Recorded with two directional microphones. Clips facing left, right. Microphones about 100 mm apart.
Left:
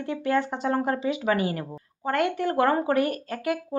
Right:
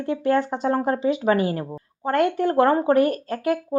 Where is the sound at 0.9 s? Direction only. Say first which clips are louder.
Right 4 dB; 40° right (ahead or behind).